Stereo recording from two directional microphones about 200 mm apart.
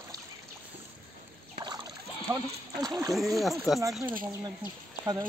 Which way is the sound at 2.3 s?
20° right (ahead or behind).